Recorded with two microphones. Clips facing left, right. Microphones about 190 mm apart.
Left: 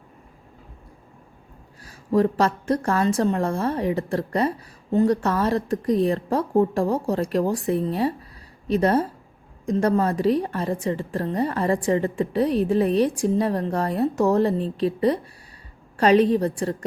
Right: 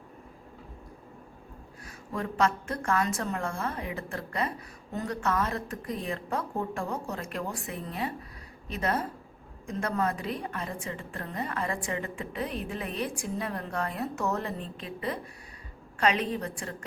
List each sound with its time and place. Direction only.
1.8 s a woman's voice: 35° left (ahead or behind)